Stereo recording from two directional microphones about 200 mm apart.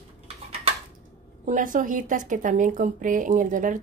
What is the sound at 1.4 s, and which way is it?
A woman's voice, 40° right (ahead or behind).